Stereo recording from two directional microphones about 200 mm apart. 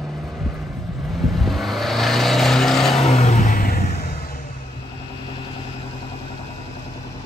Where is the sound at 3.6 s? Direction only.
45° left (ahead or behind).